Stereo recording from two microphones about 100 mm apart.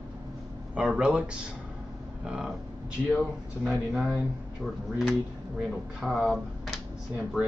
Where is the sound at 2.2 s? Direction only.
5° right (ahead or behind).